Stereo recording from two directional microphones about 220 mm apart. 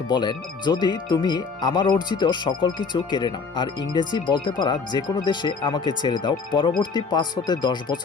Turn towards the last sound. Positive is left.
turn(degrees=20)  # may be behind; listen again after turning